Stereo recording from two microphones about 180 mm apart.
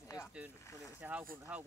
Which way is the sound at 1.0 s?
10° right (ahead or behind).